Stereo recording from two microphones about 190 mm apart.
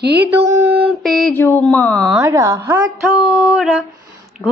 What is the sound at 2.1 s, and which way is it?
Speech, 15° right (ahead or behind).